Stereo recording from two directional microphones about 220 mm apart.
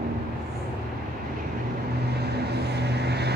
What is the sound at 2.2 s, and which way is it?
Vehicle, 50° right (ahead or behind).